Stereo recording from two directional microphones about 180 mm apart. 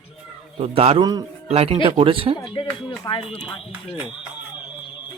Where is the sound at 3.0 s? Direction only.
30° left (ahead or behind).